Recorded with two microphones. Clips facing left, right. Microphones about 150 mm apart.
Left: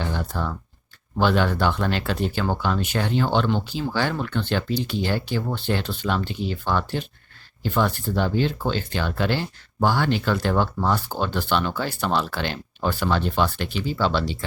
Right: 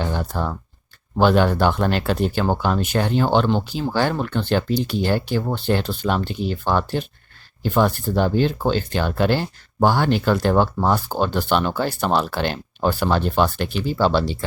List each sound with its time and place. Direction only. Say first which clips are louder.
0.0 s speech: right 3 dB; 45° right (ahead or behind)